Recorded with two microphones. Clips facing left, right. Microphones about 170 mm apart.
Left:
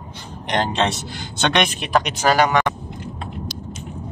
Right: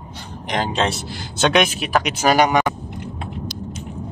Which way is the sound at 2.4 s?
15° right (ahead or behind).